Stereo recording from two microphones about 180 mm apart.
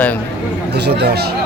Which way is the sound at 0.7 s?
65° right (ahead or behind).